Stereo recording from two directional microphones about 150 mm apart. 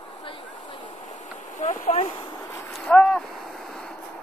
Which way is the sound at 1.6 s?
55° left (ahead or behind).